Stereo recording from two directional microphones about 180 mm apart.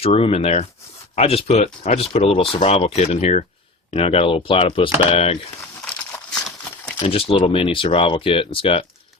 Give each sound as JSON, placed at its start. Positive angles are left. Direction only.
{"t": 0.0, "sound": "speech", "side_deg": 35}
{"t": 7.0, "sound": "speech", "side_deg": 30}